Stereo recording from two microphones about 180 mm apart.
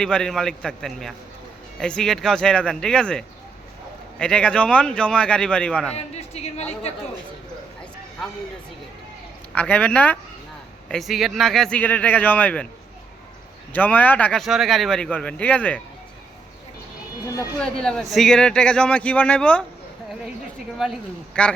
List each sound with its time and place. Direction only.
0.0 s speech: 5° left (ahead or behind)
6.0 s a woman's voice: 35° left (ahead or behind)
9.6 s speech: 5° left (ahead or behind)
13.7 s speech: 10° left (ahead or behind)
17.3 s speech: 5° left (ahead or behind)
20.7 s speech: centre (ahead or behind)